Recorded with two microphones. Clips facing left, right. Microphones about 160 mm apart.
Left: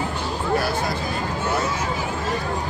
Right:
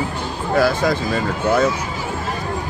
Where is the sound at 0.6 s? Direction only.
90° right.